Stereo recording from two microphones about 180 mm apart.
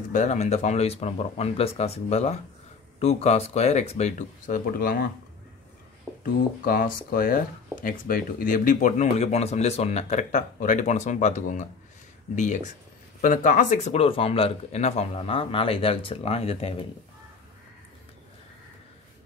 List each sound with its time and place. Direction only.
0.1 s speech: 40° left (ahead or behind)
6.1 s a sound: centre (ahead or behind)
6.6 s speech: 50° left (ahead or behind); by 16.7 s 35° left (ahead or behind)